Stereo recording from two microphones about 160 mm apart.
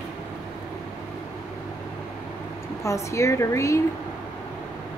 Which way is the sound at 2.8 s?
20° left (ahead or behind).